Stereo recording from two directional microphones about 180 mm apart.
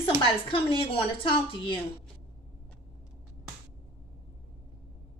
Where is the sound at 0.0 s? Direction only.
30° left (ahead or behind).